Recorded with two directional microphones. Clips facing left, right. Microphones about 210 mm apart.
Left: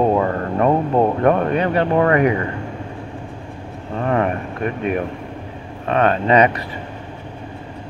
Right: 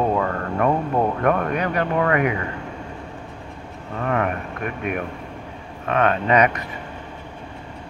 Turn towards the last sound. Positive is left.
turn(degrees=30)  # may be behind; listen again after turning